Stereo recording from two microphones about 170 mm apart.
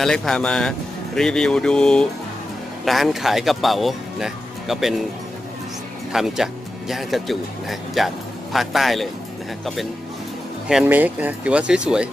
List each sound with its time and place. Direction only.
0.0 s speech: 5° left (ahead or behind)
6.1 s speech: centre (ahead or behind)
10.7 s speech: 5° right (ahead or behind)